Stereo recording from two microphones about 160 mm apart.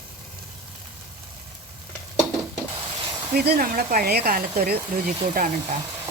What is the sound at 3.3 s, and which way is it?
Speech, 65° right (ahead or behind).